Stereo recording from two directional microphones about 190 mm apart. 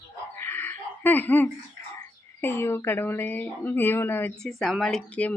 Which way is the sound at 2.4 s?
10° left (ahead or behind).